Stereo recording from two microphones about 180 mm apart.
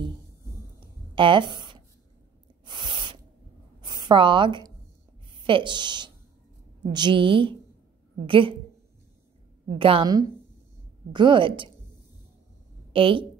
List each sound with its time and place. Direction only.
1.1 s speech: 25° right (ahead or behind)
2.6 s spray: 25° right (ahead or behind)
3.8 s a sound: 25° right (ahead or behind)
5.5 s speech: 25° right (ahead or behind)
9.8 s speech: 30° right (ahead or behind)
12.9 s speech: 30° right (ahead or behind)